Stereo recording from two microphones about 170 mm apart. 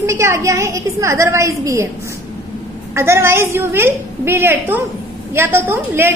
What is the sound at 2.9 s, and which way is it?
A woman's voice, 15° right (ahead or behind).